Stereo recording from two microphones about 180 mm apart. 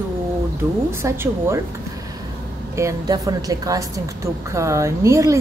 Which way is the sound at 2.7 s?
20° right (ahead or behind).